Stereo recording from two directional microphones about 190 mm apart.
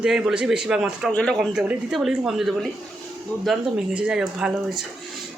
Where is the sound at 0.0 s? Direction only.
5° right (ahead or behind).